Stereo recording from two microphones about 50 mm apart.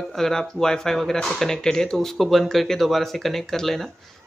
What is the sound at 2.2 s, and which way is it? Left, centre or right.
Speech, centre.